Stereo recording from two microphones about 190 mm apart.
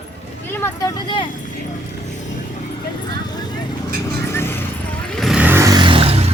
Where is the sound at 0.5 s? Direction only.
10° left (ahead or behind).